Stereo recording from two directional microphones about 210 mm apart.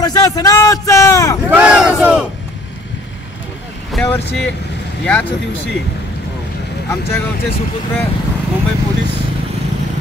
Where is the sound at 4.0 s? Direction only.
5° left (ahead or behind).